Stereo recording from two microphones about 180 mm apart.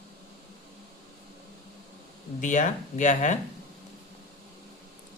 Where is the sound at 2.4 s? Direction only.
45° left (ahead or behind).